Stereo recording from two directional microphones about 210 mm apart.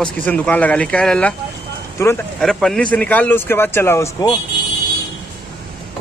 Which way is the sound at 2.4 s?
5° left (ahead or behind).